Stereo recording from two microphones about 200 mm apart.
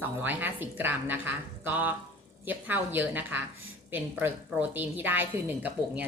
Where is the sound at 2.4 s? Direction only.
10° right (ahead or behind).